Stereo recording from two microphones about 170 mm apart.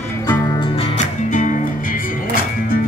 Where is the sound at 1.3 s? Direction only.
50° left (ahead or behind).